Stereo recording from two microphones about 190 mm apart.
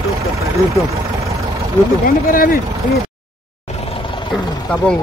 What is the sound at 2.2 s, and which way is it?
Speech, 50° left (ahead or behind).